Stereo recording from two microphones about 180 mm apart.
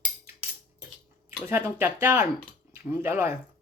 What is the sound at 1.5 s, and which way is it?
Speech, 10° right (ahead or behind).